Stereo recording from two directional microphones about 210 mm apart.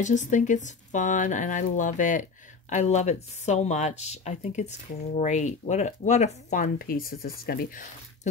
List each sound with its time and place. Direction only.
0.0 s speech: 35° left (ahead or behind)